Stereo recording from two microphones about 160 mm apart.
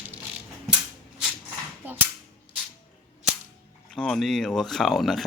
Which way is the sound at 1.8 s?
10° right (ahead or behind).